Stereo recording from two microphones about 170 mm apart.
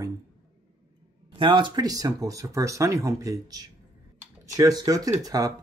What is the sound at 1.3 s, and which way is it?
Speech, 30° right (ahead or behind).